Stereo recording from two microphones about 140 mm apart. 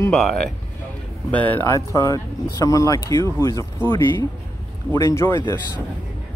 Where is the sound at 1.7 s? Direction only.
25° left (ahead or behind).